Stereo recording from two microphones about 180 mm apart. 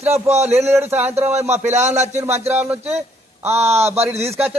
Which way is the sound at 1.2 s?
40° right (ahead or behind).